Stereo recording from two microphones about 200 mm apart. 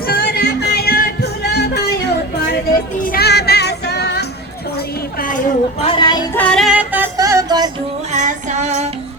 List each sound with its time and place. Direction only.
0.1 s music: 50° left (ahead or behind)
3.0 s music: 50° left (ahead or behind)
5.2 s a sound: 40° left (ahead or behind)
5.9 s child singing: 20° left (ahead or behind)
6.3 s music: 5° left (ahead or behind); by 7.7 s 20° right (ahead or behind)
8.1 s music: 40° right (ahead or behind)